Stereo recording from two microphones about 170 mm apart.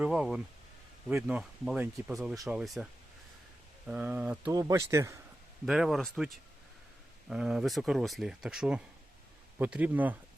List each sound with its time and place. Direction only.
0.0 s speech: centre (ahead or behind)
3.8 s speech: 10° right (ahead or behind)
4.5 s speech: 20° right (ahead or behind)
5.6 s speech: 5° right (ahead or behind)